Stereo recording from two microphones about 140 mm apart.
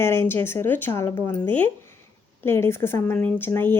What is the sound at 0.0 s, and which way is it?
Speech, 15° left (ahead or behind).